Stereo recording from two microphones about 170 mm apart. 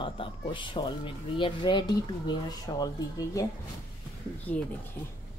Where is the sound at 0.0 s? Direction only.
30° left (ahead or behind).